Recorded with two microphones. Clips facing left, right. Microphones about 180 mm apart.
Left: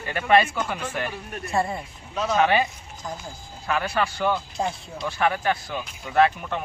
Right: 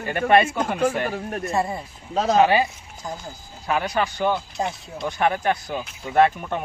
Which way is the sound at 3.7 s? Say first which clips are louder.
Right 2 dB; 25° right (ahead or behind).